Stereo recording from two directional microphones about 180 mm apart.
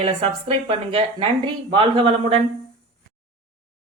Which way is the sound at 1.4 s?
30° right (ahead or behind).